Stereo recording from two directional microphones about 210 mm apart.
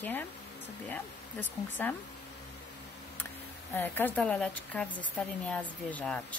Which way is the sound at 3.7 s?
10° left (ahead or behind).